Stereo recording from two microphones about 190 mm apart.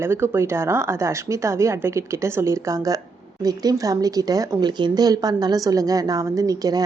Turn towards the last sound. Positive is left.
turn(degrees=-20)  # may be behind; listen again after turning